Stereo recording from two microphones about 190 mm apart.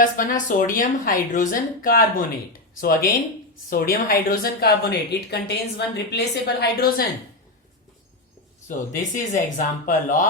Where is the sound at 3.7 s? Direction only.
50° left (ahead or behind).